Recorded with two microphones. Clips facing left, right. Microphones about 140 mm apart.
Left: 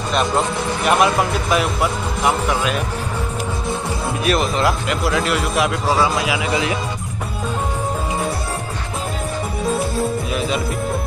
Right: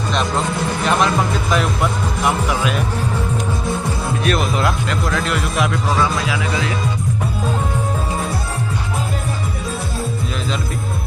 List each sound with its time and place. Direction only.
0.8 s speech: 5° left (ahead or behind)
4.2 s speech: centre (ahead or behind)
6.1 s speech: 20° left (ahead or behind)